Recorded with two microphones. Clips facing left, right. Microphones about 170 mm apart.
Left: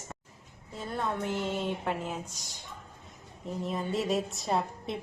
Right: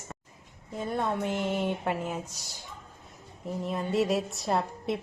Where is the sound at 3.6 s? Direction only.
Centre (ahead or behind).